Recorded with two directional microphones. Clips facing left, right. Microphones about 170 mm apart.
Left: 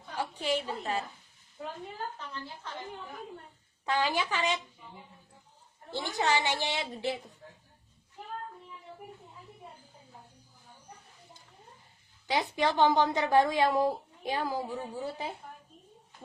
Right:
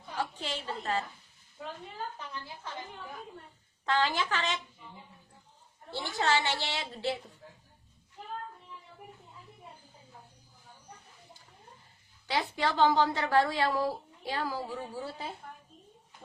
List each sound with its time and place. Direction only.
0.1 s a sound: 15° left (ahead or behind)
2.1 s a woman's voice: 10° right (ahead or behind)
3.8 s a woman's voice: 15° left (ahead or behind)
5.9 s a woman's voice: 15° left (ahead or behind)
12.3 s a woman's voice: 15° left (ahead or behind)